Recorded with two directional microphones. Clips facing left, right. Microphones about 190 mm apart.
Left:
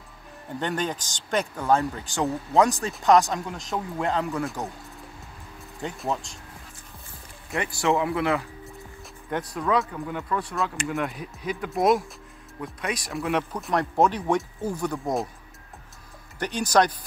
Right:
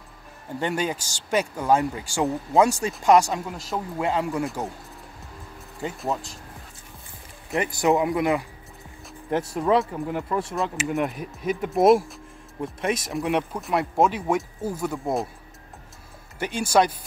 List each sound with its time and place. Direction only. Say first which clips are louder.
0.6 s speech: right 2 dB; 5° right (ahead or behind)
5.8 s speech: right 1 dB; 5° right (ahead or behind)
7.5 s speech: right 3 dB; 20° right (ahead or behind)
9.3 s speech: right 4 dB; 25° right (ahead or behind)
10.5 s speech: right 2 dB; centre (ahead or behind)
11.8 s speech: right 5 dB; 30° right (ahead or behind)
13.6 s speech: left 1 dB; centre (ahead or behind)
16.3 s speech: right 1 dB; 10° right (ahead or behind)